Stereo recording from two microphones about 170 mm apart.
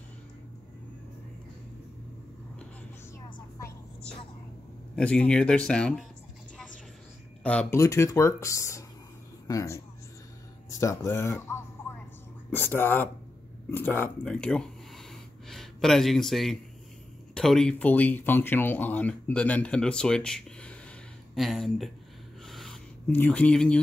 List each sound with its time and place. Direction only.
4.9 s speech: 5° left (ahead or behind)
7.4 s speech: 5° left (ahead or behind)
7.8 s speech: 15° left (ahead or behind); by 21.9 s centre (ahead or behind)
22.5 s writing: centre (ahead or behind)